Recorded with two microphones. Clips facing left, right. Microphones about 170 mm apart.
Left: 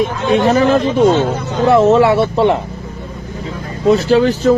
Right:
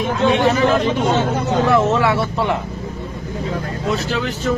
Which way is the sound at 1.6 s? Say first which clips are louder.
Left 9 dB; 20° left (ahead or behind).